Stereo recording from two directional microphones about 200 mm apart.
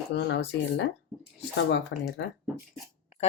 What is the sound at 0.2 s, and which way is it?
Speech, 60° left (ahead or behind).